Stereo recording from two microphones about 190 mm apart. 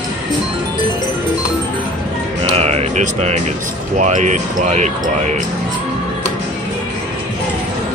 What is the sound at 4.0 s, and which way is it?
Speech, 40° right (ahead or behind).